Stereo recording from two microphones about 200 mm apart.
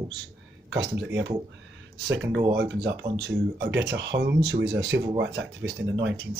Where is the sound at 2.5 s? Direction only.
55° right (ahead or behind).